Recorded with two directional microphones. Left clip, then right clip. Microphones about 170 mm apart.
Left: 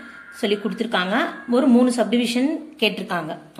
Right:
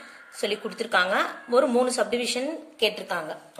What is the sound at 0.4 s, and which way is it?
Speech, 25° right (ahead or behind).